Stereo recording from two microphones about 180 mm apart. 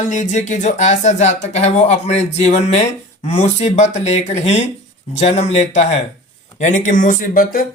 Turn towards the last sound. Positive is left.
turn(degrees=55)  # may be behind; listen again after turning